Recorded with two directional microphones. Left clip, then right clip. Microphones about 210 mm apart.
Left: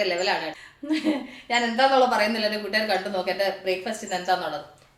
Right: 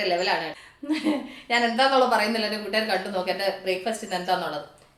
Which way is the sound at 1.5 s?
10° right (ahead or behind).